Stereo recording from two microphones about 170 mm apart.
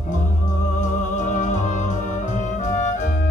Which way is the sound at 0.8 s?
45° left (ahead or behind).